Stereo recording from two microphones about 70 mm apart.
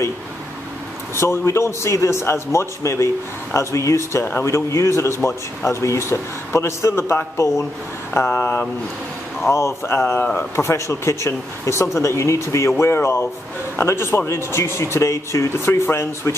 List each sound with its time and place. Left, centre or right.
1.1 s speech: left
8.3 s speech: left
9.5 s speech: left